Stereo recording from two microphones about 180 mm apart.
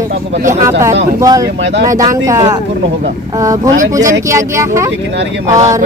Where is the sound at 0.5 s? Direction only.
15° right (ahead or behind).